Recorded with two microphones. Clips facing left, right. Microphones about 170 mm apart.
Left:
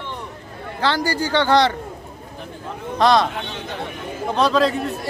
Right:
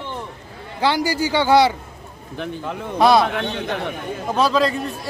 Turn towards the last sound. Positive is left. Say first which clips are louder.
# left 1 dB
turn(degrees=0)  # may be behind; listen again after turning